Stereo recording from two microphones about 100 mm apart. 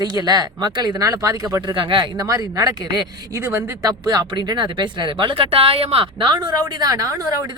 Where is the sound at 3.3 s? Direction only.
30° right (ahead or behind).